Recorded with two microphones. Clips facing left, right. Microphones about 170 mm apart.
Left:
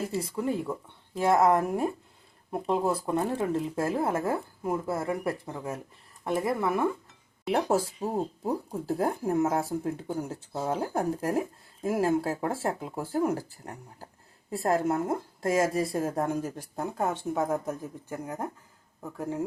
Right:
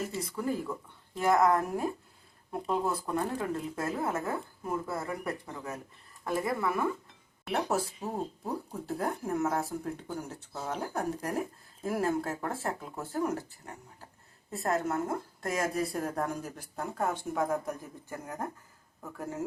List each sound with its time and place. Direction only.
0.0 s speech: 30° left (ahead or behind)
17.1 s speech: 10° left (ahead or behind)